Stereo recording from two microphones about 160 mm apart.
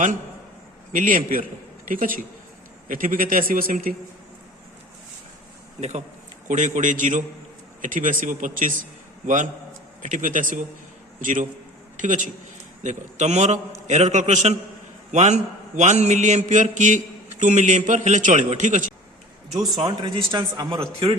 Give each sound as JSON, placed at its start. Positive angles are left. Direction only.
{"t": 0.9, "sound": "a man's voice", "side_deg": -55}
{"t": 6.5, "sound": "a man's voice", "side_deg": -50}
{"t": 19.8, "sound": "speech", "side_deg": -25}